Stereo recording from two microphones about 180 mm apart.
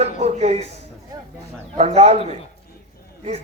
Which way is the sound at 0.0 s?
40° right (ahead or behind).